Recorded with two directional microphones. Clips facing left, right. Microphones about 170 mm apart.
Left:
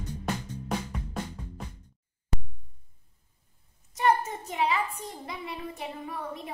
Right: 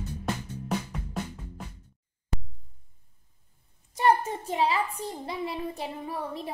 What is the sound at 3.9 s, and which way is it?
A woman's voice, 30° right (ahead or behind).